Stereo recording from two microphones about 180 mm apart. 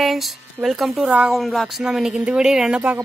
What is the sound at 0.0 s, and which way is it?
Speech, centre (ahead or behind).